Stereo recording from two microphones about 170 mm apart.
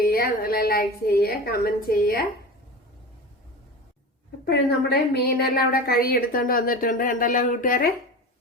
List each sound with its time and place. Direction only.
0.0 s a woman's voice: 60° left (ahead or behind)
4.4 s a woman's voice: 70° left (ahead or behind); by 7.9 s 55° left (ahead or behind)